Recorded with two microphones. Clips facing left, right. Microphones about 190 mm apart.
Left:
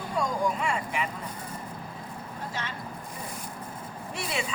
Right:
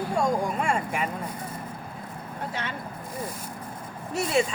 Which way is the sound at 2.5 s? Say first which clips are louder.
Right 2 dB; 60° right (ahead or behind).